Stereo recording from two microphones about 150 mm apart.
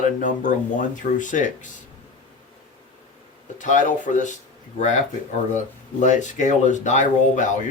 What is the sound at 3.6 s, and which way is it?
Speech, 55° left (ahead or behind).